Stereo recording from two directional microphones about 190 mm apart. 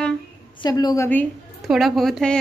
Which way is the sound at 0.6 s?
20° left (ahead or behind).